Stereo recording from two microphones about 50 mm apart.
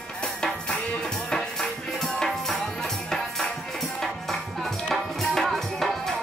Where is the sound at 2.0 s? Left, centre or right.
Centre.